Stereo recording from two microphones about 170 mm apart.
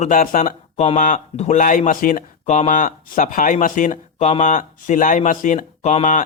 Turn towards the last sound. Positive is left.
turn(degrees=45)  # may be behind; listen again after turning